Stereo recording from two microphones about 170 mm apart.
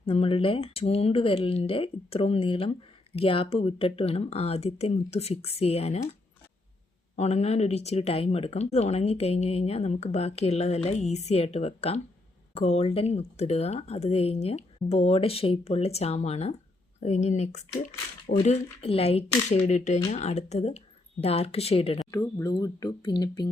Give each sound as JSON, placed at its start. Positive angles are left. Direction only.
{"t": 0.0, "sound": "speech", "side_deg": 35}
{"t": 7.2, "sound": "speech", "side_deg": 40}
{"t": 18.3, "sound": "speech", "side_deg": 35}
{"t": 22.1, "sound": "speech", "side_deg": 20}